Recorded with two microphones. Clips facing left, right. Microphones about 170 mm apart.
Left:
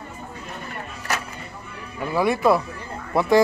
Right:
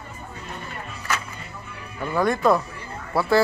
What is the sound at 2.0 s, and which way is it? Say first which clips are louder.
Speech: left 1 dB; 10° left (ahead or behind).